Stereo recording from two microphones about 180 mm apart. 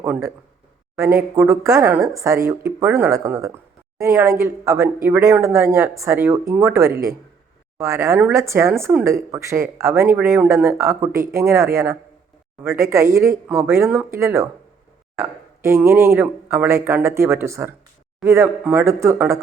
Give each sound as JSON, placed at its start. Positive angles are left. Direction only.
{"t": 0.0, "sound": "speech", "side_deg": -10}